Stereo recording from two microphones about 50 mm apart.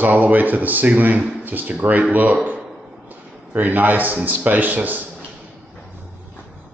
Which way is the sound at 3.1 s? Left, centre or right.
Right.